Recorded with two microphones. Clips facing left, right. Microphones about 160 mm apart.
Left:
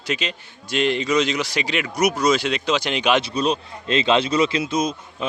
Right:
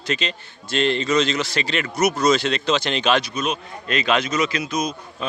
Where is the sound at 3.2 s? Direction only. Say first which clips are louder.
Left 4 dB; 35° left (ahead or behind).